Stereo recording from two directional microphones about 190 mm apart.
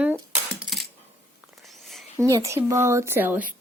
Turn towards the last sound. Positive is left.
turn(degrees=-10)  # may be behind; listen again after turning